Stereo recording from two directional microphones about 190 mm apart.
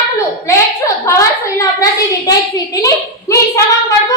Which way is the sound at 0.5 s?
15° left (ahead or behind).